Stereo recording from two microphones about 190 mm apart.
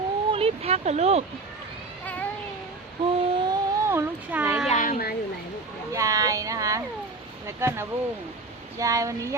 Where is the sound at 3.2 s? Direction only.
25° right (ahead or behind).